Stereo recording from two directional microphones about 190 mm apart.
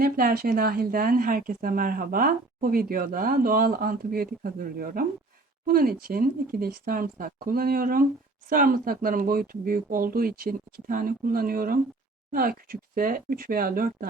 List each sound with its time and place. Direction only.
0.0 s a woman's voice: 50° right (ahead or behind)